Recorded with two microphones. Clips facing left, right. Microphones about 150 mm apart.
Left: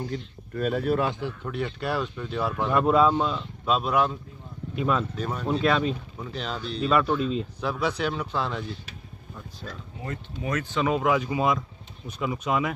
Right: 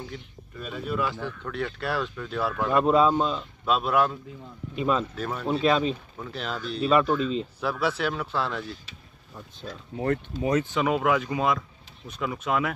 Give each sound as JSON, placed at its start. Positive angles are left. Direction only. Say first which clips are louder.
{"t": 0.6, "sound": "speech", "louder": "left 8 dB", "side_deg": 55}
{"t": 0.9, "sound": "speech", "louder": "left 3 dB", "side_deg": 25}
{"t": 1.2, "sound": "speech", "louder": "left 1 dB", "side_deg": 5}
{"t": 3.1, "sound": "speech", "louder": "even", "side_deg": -15}
{"t": 3.6, "sound": "speech", "louder": "even", "side_deg": 0}
{"t": 9.9, "sound": "speech", "louder": "right 11 dB", "side_deg": -60}
{"t": 10.4, "sound": "speech", "louder": "right 4 dB", "side_deg": -30}
{"t": 10.7, "sound": "speech", "louder": "even", "side_deg": -5}